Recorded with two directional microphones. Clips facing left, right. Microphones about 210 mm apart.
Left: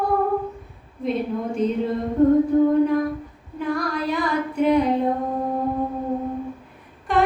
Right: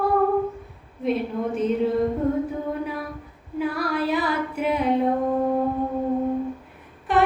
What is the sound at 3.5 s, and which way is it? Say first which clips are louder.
Female singing: even; 5° right (ahead or behind).